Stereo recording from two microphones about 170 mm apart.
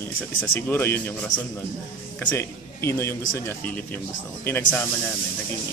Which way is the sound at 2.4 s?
15° left (ahead or behind).